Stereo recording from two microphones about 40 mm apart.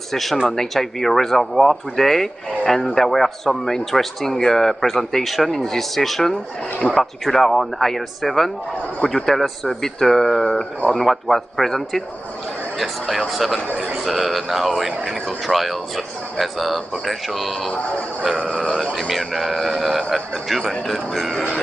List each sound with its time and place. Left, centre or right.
0.1 s a man's voice: centre
18.3 s speech: right
18.9 s a man's voice: centre